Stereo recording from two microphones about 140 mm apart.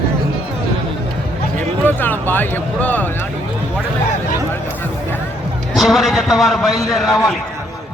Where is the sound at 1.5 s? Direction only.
15° left (ahead or behind).